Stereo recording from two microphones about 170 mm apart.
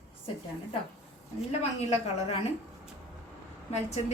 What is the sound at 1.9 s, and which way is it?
Speech, 40° left (ahead or behind).